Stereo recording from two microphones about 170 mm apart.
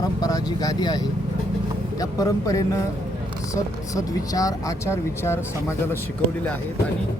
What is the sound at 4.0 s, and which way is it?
Speech, 20° left (ahead or behind).